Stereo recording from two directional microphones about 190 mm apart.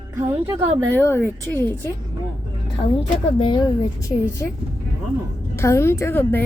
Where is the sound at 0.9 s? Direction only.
10° left (ahead or behind).